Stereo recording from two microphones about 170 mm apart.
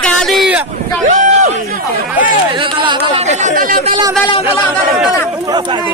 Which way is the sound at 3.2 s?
45° right (ahead or behind).